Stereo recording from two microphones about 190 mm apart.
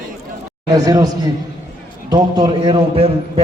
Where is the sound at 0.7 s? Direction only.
20° right (ahead or behind).